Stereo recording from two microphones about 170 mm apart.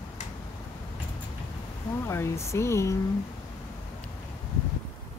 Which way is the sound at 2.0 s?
15° left (ahead or behind).